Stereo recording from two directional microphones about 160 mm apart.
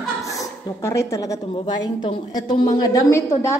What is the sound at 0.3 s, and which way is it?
A woman's voice, 20° left (ahead or behind).